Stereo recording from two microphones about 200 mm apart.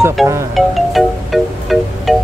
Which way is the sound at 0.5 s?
Centre (ahead or behind).